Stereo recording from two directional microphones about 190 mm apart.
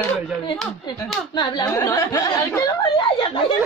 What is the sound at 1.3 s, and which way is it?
Laughter, 20° left (ahead or behind).